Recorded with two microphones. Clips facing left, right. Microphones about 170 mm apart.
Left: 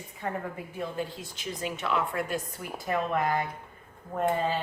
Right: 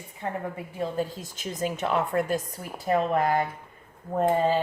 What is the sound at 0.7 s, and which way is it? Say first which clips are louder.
A woman's voice: right 5 dB; 40° right (ahead or behind).